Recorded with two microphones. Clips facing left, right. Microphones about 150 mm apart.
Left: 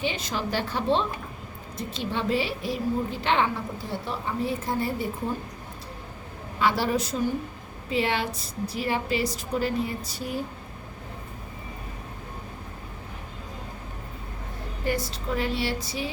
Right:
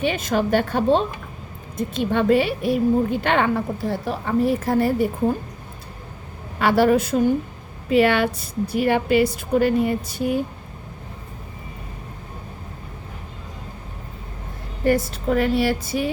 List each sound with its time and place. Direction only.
0.0 s a woman's voice: 55° right (ahead or behind)
6.6 s a woman's voice: 60° right (ahead or behind)
15.1 s a woman's voice: 55° right (ahead or behind)